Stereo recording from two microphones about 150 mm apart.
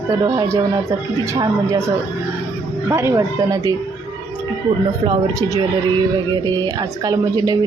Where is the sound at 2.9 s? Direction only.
20° right (ahead or behind).